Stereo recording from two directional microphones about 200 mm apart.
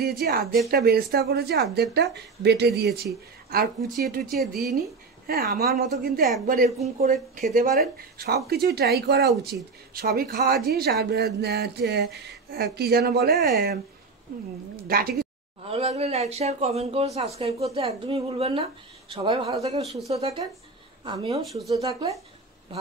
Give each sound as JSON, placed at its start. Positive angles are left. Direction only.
{"t": 0.0, "sound": "speech", "side_deg": -50}
{"t": 4.4, "sound": "speech", "side_deg": 0}
{"t": 5.2, "sound": "speech", "side_deg": -50}
{"t": 8.7, "sound": "speech", "side_deg": -55}
{"t": 14.9, "sound": "speech", "side_deg": -50}
{"t": 15.6, "sound": "speech", "side_deg": -30}
{"t": 21.4, "sound": "speech", "side_deg": 0}
{"t": 21.6, "sound": "speech", "side_deg": -15}